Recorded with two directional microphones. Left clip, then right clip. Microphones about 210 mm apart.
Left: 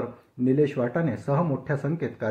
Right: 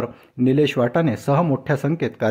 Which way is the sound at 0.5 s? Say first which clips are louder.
Right 5 dB; 50° right (ahead or behind).